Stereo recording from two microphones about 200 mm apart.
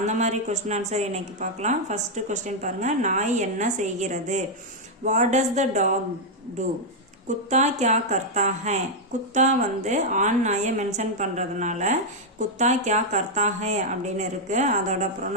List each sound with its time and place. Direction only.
0.0 s a woman's voice: 35° right (ahead or behind)
7.5 s a woman's voice: 35° right (ahead or behind)